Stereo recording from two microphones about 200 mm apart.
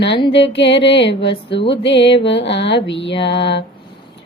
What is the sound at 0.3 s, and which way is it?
Music, 60° left (ahead or behind).